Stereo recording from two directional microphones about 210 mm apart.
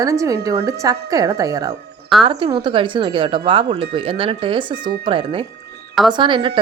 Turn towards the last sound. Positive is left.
turn(degrees=-25)  # may be behind; listen again after turning